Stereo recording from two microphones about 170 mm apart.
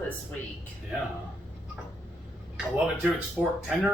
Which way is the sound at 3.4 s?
Centre (ahead or behind).